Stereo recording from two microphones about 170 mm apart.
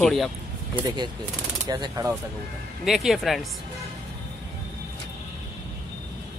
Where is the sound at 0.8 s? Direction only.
25° right (ahead or behind).